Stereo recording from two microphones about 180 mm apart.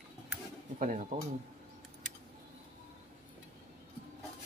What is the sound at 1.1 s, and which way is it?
Speech, 45° right (ahead or behind).